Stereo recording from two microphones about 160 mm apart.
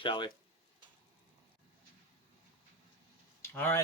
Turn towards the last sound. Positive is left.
turn(degrees=15)  # may be behind; listen again after turning